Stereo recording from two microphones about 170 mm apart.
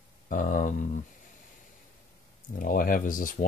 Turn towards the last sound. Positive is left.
turn(degrees=55)  # may be behind; listen again after turning